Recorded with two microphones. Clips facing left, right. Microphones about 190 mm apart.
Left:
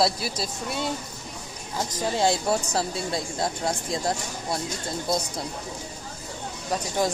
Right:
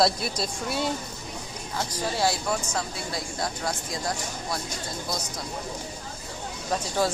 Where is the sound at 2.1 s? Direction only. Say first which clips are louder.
Left 4 dB; 25° left (ahead or behind).